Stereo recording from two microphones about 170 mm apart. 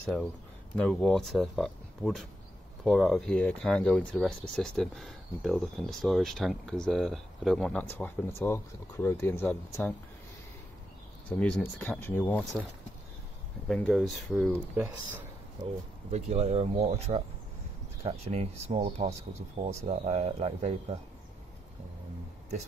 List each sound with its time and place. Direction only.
0.7 s speech: 5° left (ahead or behind)
11.2 s speech: 10° left (ahead or behind)
13.7 s speech: 5° left (ahead or behind)
16.1 s speech: 40° right (ahead or behind)